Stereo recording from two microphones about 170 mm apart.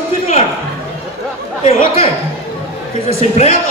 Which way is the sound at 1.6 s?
40° left (ahead or behind).